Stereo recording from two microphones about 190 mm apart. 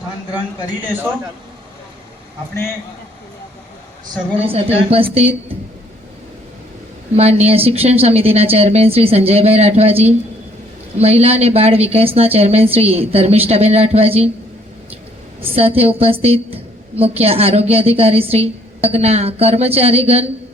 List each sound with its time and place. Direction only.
4.4 s a woman's voice: 30° right (ahead or behind)
7.2 s a woman's voice: 30° right (ahead or behind)
15.5 s a woman's voice: 30° right (ahead or behind)